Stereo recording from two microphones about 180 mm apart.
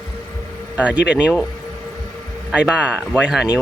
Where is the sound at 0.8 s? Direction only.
5° right (ahead or behind).